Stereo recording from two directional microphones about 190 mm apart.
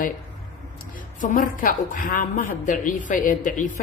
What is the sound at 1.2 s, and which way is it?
A woman's voice, 45° left (ahead or behind).